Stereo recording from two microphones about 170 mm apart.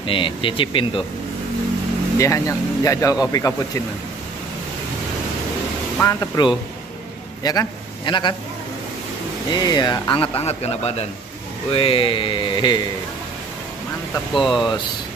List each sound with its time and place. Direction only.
0.0 s speech: 30° left (ahead or behind)
2.1 s speech: 20° left (ahead or behind)
5.9 s a man's voice: 20° left (ahead or behind)
9.5 s speech: 25° left (ahead or behind)
14.3 s speech: centre (ahead or behind)